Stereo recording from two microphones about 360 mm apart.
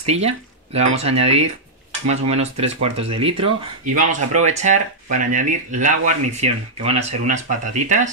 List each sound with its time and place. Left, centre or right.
0.0 s speech: centre